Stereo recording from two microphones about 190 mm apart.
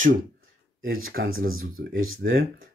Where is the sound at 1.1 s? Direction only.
60° right (ahead or behind).